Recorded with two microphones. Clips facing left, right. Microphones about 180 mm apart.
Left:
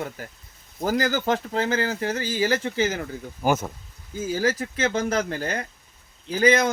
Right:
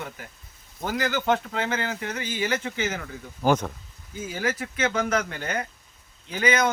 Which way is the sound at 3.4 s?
5° left (ahead or behind).